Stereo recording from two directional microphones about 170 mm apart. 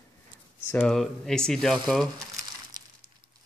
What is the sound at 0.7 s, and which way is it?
Speech, 5° left (ahead or behind).